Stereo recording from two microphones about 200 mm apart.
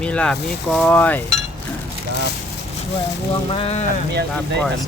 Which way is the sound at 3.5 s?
30° left (ahead or behind).